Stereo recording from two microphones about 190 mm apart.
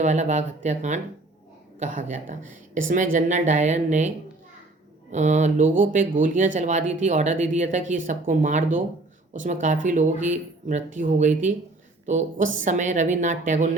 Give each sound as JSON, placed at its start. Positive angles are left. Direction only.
{"t": 0.0, "sound": "speech", "side_deg": -40}
{"t": 5.1, "sound": "speech", "side_deg": -40}